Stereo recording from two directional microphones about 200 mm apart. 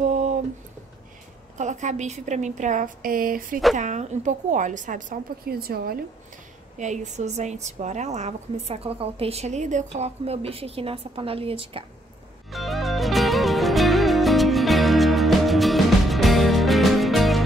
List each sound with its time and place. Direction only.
0.0 s a sound: 35° right (ahead or behind)
1.6 s a woman's voice: 35° right (ahead or behind)
6.8 s a woman's voice: 35° right (ahead or behind)
12.4 s music: centre (ahead or behind)